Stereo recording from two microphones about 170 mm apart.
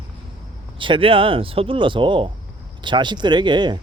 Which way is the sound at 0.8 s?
30° right (ahead or behind).